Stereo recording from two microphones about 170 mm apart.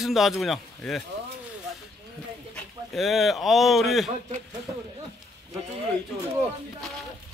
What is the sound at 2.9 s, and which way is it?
Speech, centre (ahead or behind).